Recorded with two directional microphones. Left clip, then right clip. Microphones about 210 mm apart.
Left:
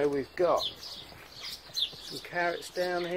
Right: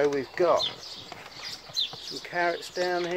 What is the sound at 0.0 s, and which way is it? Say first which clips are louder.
Speech: right 3 dB; 20° right (ahead or behind).